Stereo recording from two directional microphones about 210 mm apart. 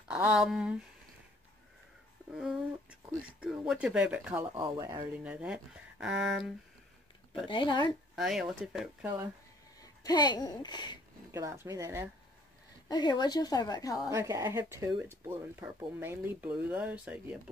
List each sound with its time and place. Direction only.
0.1 s speech: 5° right (ahead or behind)
2.3 s speech: 5° right (ahead or behind)
4.6 s speech: 20° right (ahead or behind)
5.1 s speech: 5° right (ahead or behind)
7.4 s a woman's voice: 20° left (ahead or behind)
8.2 s speech: centre (ahead or behind)
9.8 s speech: 20° left (ahead or behind)
11.3 s speech: 15° right (ahead or behind)
12.8 s a woman's voice: 20° left (ahead or behind)
14.1 s speech: 15° right (ahead or behind)